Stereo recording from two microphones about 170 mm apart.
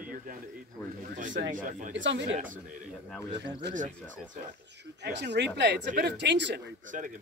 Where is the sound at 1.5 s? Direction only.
50° right (ahead or behind).